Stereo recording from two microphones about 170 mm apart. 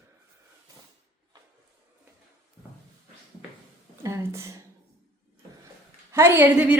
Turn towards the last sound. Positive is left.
turn(degrees=-10)  # may be behind; listen again after turning